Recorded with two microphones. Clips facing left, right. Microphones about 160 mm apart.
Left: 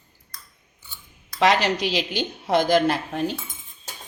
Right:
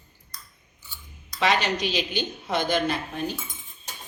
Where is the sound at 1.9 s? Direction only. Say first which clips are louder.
Left 2 dB; 90° left.